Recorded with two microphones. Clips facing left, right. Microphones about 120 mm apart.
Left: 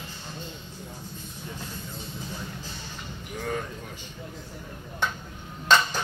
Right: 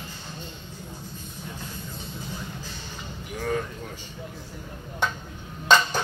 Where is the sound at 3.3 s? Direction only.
Centre (ahead or behind).